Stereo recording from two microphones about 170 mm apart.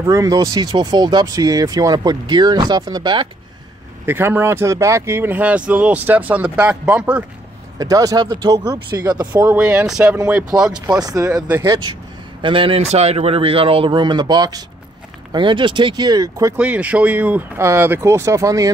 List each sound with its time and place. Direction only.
0.0 s speech: 20° right (ahead or behind)
4.0 s speech: 10° right (ahead or behind)
7.8 s speech: 20° right (ahead or behind)
9.4 s speech: 10° right (ahead or behind)
10.9 s a man's voice: 20° right (ahead or behind)
16.5 s speech: 10° right (ahead or behind)